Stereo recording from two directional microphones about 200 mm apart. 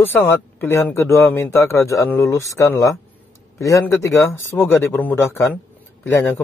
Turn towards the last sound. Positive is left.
turn(degrees=10)  # may be behind; listen again after turning